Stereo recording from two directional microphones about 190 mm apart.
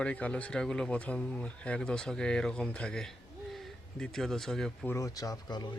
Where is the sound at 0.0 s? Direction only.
5° left (ahead or behind).